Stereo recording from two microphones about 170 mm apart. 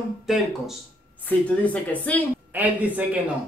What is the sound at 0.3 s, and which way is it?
A woman's voice, centre (ahead or behind).